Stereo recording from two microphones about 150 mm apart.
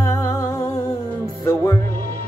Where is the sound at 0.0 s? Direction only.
20° left (ahead or behind).